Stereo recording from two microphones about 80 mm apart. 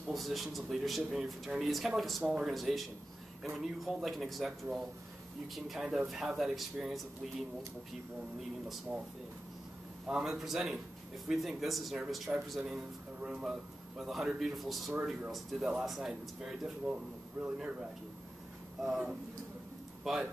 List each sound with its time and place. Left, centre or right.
0.1 s speech: centre
2.2 s a man's voice: centre
2.5 s speech: centre
10.0 s a man's voice: centre
18.8 s a man's voice: centre